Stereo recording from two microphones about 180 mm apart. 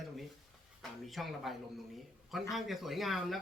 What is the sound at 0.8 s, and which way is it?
Speech, centre (ahead or behind).